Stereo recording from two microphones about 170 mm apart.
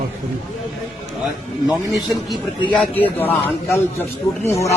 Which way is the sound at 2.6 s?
10° left (ahead or behind).